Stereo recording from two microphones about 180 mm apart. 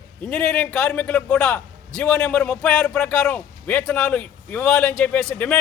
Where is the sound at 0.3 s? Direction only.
5° left (ahead or behind).